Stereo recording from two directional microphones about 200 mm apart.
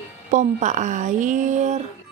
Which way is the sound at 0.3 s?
40° right (ahead or behind).